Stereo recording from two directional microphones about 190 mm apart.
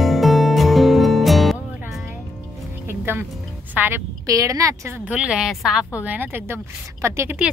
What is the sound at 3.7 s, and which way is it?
A woman's voice, 10° right (ahead or behind).